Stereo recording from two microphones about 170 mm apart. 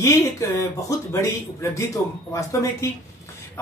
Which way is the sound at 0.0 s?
20° left (ahead or behind).